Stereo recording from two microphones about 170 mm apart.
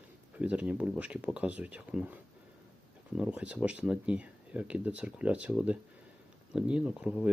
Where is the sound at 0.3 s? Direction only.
10° right (ahead or behind).